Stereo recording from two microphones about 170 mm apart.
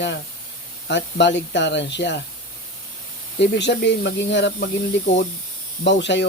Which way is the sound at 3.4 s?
90° left.